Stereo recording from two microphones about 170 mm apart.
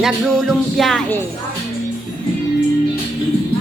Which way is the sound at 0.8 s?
Centre (ahead or behind).